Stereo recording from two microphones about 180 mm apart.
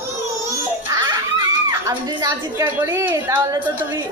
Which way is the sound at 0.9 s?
20° right (ahead or behind).